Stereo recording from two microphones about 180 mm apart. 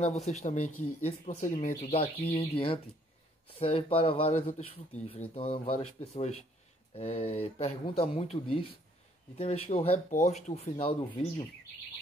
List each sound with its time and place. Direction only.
0.0 s speech: 40° left (ahead or behind)